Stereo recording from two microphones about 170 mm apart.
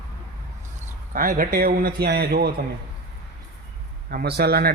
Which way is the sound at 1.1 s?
55° right (ahead or behind).